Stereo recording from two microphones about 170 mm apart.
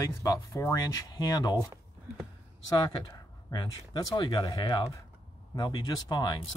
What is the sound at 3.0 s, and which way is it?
Speech, 25° left (ahead or behind).